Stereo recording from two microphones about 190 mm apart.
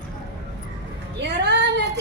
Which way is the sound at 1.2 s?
65° right (ahead or behind).